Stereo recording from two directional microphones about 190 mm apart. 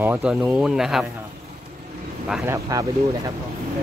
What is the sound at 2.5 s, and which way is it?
Speech, 15° right (ahead or behind).